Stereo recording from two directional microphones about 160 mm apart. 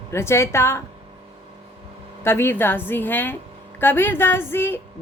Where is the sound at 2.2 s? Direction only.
15° left (ahead or behind).